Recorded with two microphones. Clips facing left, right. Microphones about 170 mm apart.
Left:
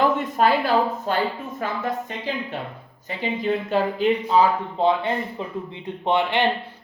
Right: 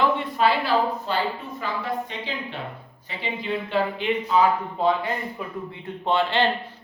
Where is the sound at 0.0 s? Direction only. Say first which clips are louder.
Left 2 dB; 45° left (ahead or behind).